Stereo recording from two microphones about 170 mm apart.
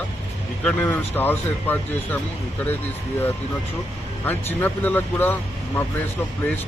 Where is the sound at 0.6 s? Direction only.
10° left (ahead or behind).